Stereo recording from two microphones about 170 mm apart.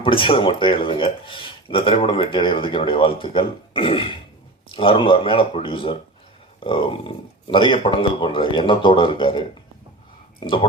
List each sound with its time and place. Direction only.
0.0 s speech: 30° left (ahead or behind)
10.4 s speech: 30° left (ahead or behind)